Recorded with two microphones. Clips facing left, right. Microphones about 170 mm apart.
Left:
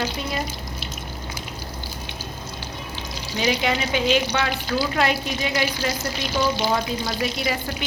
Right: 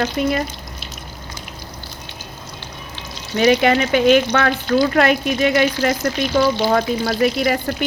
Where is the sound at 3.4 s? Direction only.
65° right (ahead or behind).